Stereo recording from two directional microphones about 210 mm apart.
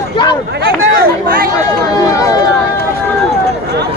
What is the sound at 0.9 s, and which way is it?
Speech, 45° right (ahead or behind).